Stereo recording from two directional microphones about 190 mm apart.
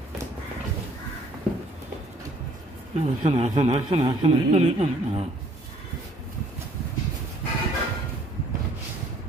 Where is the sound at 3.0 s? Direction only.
35° right (ahead or behind).